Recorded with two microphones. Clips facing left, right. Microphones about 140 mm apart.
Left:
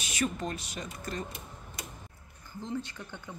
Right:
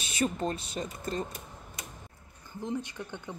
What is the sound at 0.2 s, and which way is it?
Speech, 30° right (ahead or behind).